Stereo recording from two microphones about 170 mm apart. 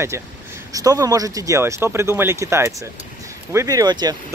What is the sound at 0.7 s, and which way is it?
Speech, 20° right (ahead or behind).